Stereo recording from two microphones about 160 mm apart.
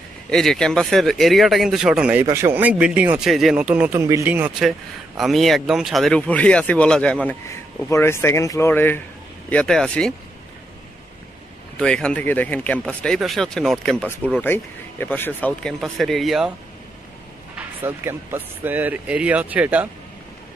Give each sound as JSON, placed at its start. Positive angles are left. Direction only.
{"t": 0.3, "sound": "speech", "side_deg": 5}
{"t": 4.6, "sound": "speech", "side_deg": 0}
{"t": 11.7, "sound": "speech", "side_deg": 5}
{"t": 15.8, "sound": "speech", "side_deg": 0}
{"t": 17.6, "sound": "speech", "side_deg": -10}